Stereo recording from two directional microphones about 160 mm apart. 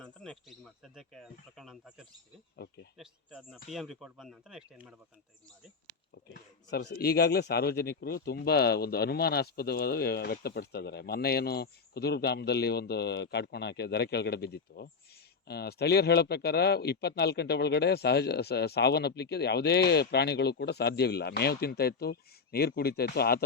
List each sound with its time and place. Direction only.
0.0 s speech: 5° left (ahead or behind)
2.6 s speech: 80° left
3.0 s speech: 5° right (ahead or behind)
6.7 s speech: 85° left